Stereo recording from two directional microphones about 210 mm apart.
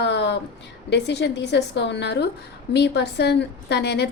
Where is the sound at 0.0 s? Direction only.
55° left (ahead or behind).